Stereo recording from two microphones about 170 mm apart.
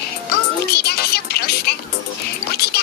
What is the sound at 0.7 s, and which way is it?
Music, 70° left (ahead or behind).